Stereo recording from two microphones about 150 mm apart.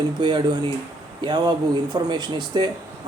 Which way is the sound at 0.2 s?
30° right (ahead or behind).